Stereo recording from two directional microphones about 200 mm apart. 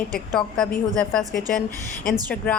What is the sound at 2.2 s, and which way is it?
Speech, 5° left (ahead or behind).